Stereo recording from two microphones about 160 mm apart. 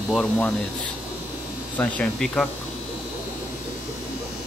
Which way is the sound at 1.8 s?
5° left (ahead or behind).